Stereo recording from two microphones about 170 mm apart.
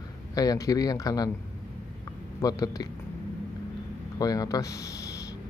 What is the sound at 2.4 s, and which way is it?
Speech, 20° left (ahead or behind).